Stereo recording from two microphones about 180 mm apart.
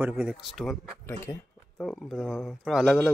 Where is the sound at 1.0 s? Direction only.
10° left (ahead or behind).